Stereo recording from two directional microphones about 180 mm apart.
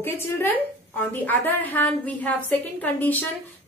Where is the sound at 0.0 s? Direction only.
10° left (ahead or behind).